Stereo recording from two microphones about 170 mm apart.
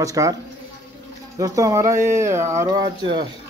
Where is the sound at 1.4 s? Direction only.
20° right (ahead or behind).